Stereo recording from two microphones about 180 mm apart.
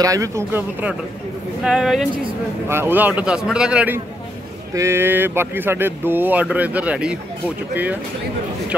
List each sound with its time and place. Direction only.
0.0 s speech: 20° right (ahead or behind)